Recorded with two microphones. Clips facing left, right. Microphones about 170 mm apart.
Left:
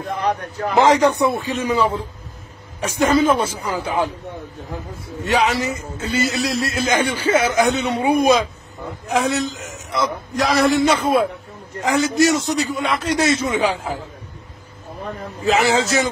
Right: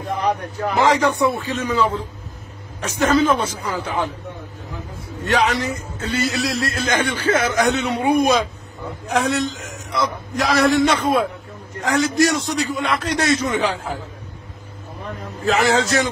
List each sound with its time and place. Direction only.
0.7 s a man's voice: 20° left (ahead or behind)
5.2 s a man's voice: 5° left (ahead or behind)
15.4 s a man's voice: centre (ahead or behind)